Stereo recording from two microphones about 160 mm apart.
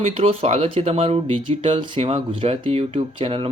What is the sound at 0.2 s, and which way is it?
Speech, 40° right (ahead or behind).